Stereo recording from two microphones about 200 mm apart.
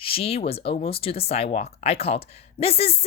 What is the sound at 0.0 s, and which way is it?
Speech, 30° left (ahead or behind).